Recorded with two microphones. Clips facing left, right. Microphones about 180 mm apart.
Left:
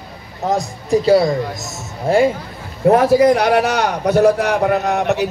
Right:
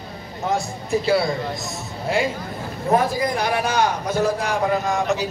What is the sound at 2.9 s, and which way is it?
A man's voice, 75° left (ahead or behind).